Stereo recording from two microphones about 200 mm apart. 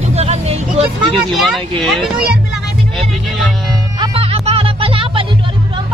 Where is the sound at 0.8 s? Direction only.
Centre (ahead or behind).